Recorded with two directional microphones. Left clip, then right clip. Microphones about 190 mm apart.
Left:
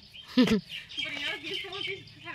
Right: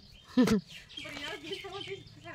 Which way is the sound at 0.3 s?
Centre (ahead or behind).